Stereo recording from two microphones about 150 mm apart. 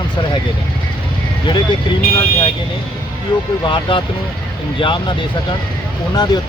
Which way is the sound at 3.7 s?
35° left (ahead or behind).